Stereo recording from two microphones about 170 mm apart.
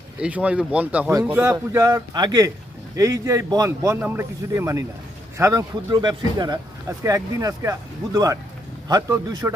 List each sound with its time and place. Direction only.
0.2 s a man's voice: 10° right (ahead or behind)